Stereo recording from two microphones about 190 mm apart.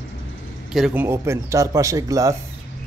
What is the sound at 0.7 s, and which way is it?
Speech, 5° right (ahead or behind).